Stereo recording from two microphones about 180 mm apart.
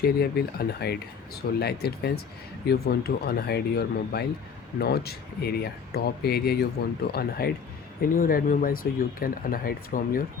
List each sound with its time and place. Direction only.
0.0 s speech: 60° left (ahead or behind)